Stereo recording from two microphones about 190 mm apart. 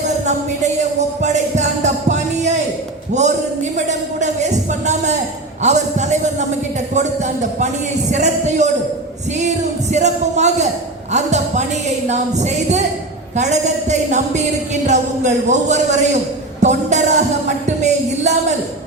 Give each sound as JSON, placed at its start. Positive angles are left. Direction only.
{"t": 0.3, "sound": "a woman's voice", "side_deg": -40}
{"t": 9.9, "sound": "a woman's voice", "side_deg": -40}